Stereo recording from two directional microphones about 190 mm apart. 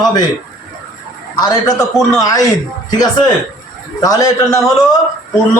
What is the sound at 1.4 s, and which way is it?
Speech, 20° left (ahead or behind).